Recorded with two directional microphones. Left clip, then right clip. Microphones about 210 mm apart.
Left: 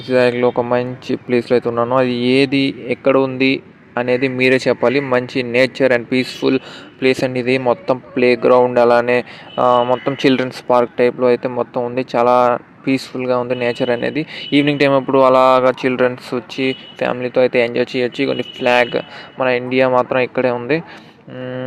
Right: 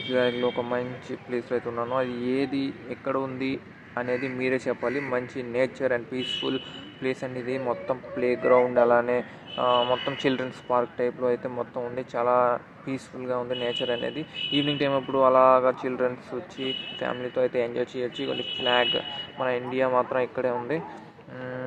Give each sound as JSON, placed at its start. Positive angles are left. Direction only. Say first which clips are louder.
{"t": 0.1, "sound": "speech", "louder": "left 11 dB", "side_deg": 45}
{"t": 21.3, "sound": "speech", "louder": "left 9 dB", "side_deg": 30}